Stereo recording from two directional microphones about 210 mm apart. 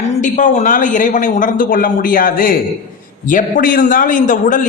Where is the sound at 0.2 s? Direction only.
35° left (ahead or behind).